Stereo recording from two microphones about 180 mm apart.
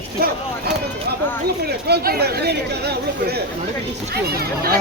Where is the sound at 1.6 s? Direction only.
60° right (ahead or behind).